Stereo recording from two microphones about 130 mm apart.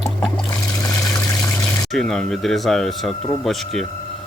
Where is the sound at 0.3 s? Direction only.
25° left (ahead or behind).